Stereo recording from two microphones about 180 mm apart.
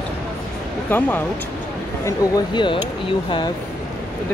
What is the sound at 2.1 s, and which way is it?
Speech, 25° left (ahead or behind).